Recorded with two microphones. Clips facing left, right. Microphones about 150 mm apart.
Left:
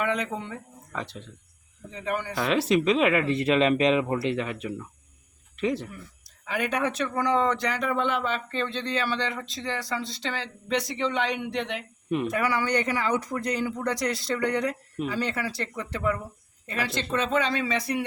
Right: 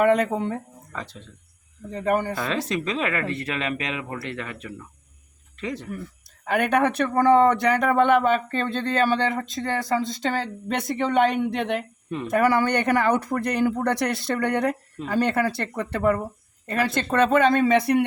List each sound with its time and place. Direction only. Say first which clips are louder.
0.0 s speech: right 9 dB; 50° right (ahead or behind)
1.9 s speech: right 7 dB; 45° right (ahead or behind)
2.5 s speech: left 4 dB; 10° left (ahead or behind)
6.4 s speech: right 6 dB; 60° right (ahead or behind)